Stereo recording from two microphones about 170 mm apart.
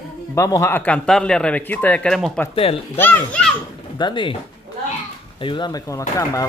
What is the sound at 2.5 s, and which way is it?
Speech, 35° left (ahead or behind).